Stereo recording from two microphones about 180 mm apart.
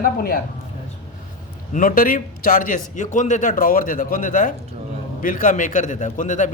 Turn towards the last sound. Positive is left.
turn(degrees=45)  # may be behind; listen again after turning